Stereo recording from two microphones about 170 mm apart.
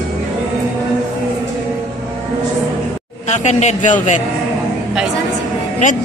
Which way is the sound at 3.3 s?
45° left (ahead or behind).